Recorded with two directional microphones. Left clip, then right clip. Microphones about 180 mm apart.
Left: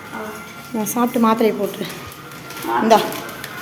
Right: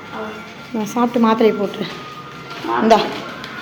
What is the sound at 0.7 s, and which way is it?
A woman's voice, 5° left (ahead or behind).